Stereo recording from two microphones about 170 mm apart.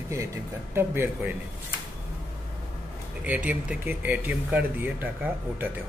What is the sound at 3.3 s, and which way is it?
Speech, 10° right (ahead or behind).